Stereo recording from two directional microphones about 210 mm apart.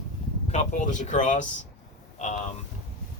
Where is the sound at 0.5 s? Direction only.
35° left (ahead or behind).